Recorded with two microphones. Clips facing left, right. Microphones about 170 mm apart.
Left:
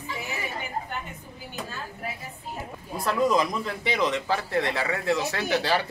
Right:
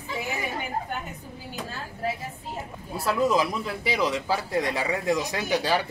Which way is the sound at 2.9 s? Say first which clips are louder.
Even; 5° right (ahead or behind).